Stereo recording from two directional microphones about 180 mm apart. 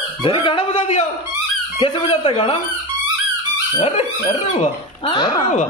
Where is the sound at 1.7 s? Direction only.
30° left (ahead or behind).